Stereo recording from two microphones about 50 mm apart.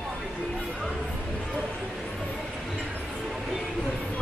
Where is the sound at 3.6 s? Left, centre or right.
Centre.